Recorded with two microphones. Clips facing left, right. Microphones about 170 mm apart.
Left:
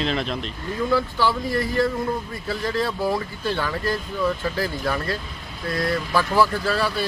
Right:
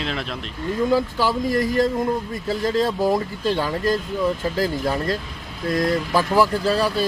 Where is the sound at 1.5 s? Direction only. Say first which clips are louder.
Right 3 dB; 40° right (ahead or behind).